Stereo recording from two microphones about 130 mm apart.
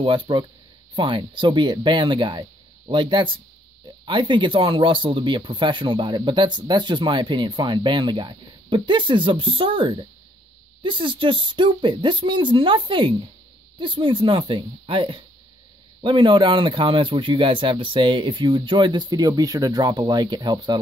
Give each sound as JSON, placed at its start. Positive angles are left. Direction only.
{"t": 0.0, "sound": "speech", "side_deg": -40}